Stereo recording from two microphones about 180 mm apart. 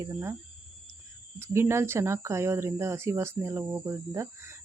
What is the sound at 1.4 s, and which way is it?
Speech, 15° right (ahead or behind).